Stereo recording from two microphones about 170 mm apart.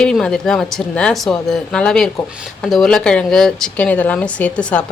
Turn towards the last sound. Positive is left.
turn(degrees=5)  # may be behind; listen again after turning